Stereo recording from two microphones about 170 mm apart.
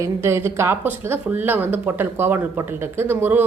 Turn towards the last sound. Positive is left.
turn(degrees=-10)  # may be behind; listen again after turning